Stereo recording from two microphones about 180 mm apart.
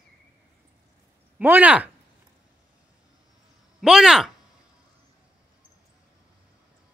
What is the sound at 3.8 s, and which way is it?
Speech, 5° right (ahead or behind).